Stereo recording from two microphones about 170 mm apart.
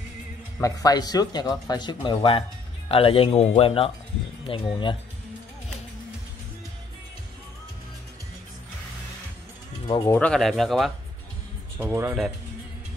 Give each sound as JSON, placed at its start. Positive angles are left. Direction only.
{"t": 0.6, "sound": "speech", "side_deg": 20}
{"t": 9.8, "sound": "speech", "side_deg": 20}
{"t": 10.1, "sound": "speech", "side_deg": 5}
{"t": 11.8, "sound": "speech", "side_deg": -15}